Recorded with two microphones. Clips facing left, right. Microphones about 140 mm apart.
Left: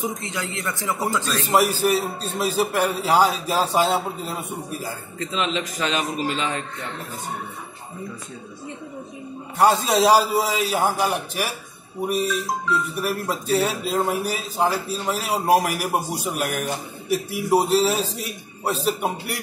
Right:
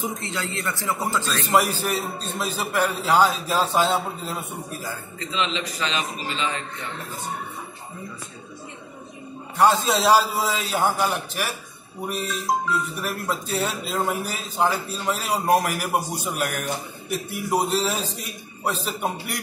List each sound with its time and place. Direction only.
0.0 s a man's voice: 20° left (ahead or behind)
5.2 s a man's voice: 45° left (ahead or behind)
9.6 s a man's voice: 10° left (ahead or behind)
13.0 s a man's voice: 10° left (ahead or behind)